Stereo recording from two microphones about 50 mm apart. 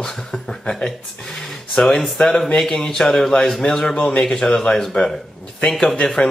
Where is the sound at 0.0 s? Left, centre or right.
Centre.